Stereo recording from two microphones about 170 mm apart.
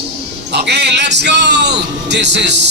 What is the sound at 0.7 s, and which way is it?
Music, 80° right.